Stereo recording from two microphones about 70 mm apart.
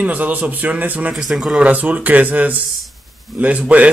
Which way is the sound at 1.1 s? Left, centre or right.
Centre.